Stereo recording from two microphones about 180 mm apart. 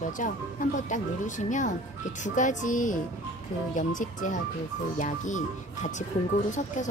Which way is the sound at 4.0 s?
45° left (ahead or behind).